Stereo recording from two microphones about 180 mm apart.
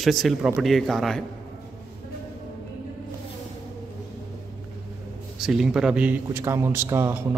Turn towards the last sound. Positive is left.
turn(degrees=-15)  # may be behind; listen again after turning